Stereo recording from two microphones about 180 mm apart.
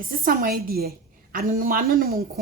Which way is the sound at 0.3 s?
55° right (ahead or behind).